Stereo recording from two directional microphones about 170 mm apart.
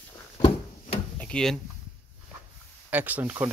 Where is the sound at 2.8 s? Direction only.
10° right (ahead or behind).